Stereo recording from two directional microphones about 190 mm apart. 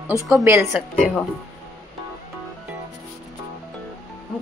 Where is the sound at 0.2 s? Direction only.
15° right (ahead or behind).